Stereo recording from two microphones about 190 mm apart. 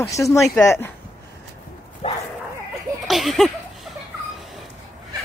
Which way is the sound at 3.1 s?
Centre (ahead or behind).